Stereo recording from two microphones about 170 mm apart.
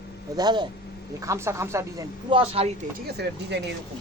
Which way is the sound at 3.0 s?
75° right (ahead or behind).